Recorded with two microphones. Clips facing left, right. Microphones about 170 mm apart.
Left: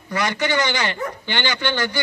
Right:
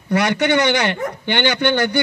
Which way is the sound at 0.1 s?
65° right (ahead or behind).